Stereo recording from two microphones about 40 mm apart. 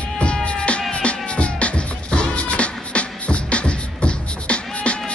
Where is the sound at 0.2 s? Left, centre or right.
Left.